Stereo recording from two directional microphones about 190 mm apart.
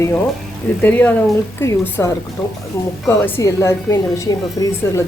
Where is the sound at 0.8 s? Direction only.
10° left (ahead or behind).